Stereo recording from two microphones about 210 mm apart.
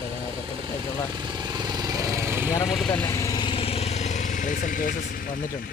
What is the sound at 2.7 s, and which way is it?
Vehicle, 5° left (ahead or behind).